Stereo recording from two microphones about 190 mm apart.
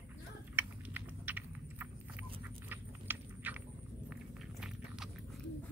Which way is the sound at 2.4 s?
10° right (ahead or behind).